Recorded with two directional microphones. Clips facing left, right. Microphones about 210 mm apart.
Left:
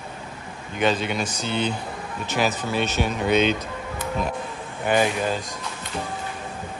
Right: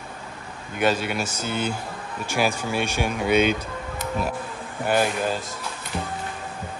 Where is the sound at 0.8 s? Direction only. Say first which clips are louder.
Even; 5° right (ahead or behind).